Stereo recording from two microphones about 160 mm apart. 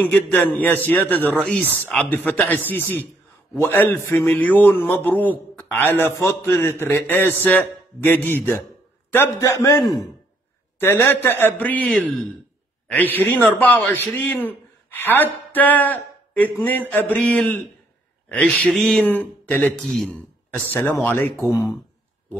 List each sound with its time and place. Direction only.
0.0 s a man's voice: 10° left (ahead or behind)